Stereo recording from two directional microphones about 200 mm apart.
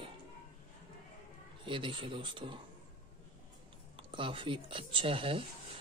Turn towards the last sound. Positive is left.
turn(degrees=-25)  # may be behind; listen again after turning